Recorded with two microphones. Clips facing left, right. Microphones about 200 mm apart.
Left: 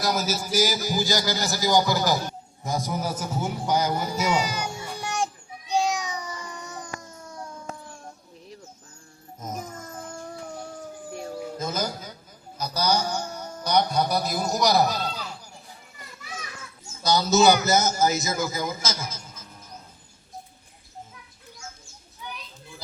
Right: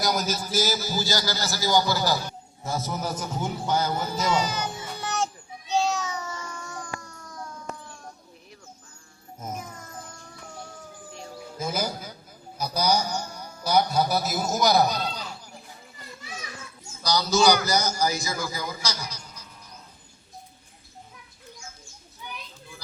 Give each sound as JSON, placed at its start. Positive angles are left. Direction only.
{"t": 0.0, "sound": "speech", "side_deg": 0}
{"t": 2.6, "sound": "a sound", "side_deg": 15}
{"t": 9.4, "sound": "music", "side_deg": -10}
{"t": 11.1, "sound": "howl", "side_deg": 50}
{"t": 11.5, "sound": "music", "side_deg": -10}
{"t": 12.5, "sound": "a sound", "side_deg": -10}
{"t": 17.0, "sound": "a man's voice", "side_deg": 25}